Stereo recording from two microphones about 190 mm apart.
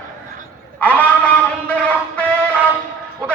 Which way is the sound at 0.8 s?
10° left (ahead or behind).